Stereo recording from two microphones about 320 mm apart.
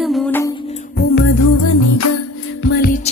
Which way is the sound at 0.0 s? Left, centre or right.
Centre.